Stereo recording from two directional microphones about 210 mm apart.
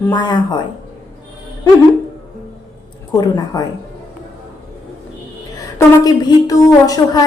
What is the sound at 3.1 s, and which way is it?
Speech, 20° left (ahead or behind).